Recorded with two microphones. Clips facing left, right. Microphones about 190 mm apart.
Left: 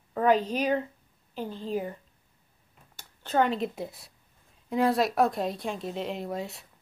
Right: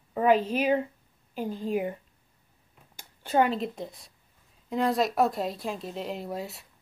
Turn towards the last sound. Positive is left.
turn(degrees=0)  # may be behind; listen again after turning